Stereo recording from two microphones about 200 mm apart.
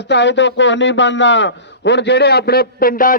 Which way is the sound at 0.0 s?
60° left (ahead or behind).